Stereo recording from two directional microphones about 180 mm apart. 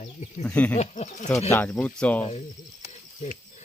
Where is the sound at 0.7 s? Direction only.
40° left (ahead or behind).